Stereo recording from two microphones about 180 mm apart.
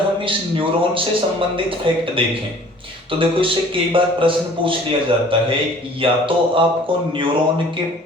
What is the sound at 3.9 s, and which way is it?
A man's voice, 30° right (ahead or behind).